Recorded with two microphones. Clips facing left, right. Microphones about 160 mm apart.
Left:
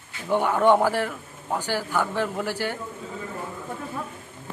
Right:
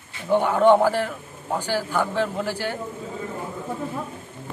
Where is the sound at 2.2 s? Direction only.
10° left (ahead or behind).